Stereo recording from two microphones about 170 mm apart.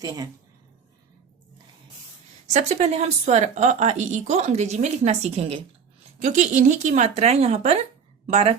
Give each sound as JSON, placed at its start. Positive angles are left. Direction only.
{"t": 2.5, "sound": "a woman's voice", "side_deg": -40}